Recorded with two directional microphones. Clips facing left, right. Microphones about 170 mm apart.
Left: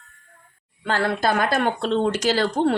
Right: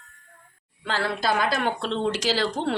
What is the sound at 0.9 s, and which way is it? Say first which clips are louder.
Speech: left 4 dB; 50° left (ahead or behind).